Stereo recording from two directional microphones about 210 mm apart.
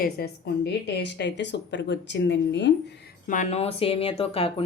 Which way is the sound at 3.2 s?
40° left (ahead or behind).